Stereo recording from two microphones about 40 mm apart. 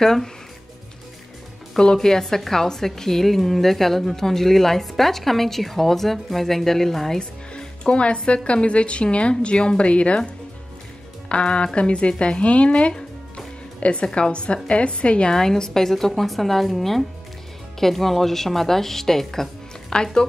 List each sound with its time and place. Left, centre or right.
0.0 s a woman's voice: centre
2.0 s a woman's voice: centre
7.2 s speech: left
14.0 s a woman's voice: centre
14.3 s speech: left
15.3 s a woman's voice: centre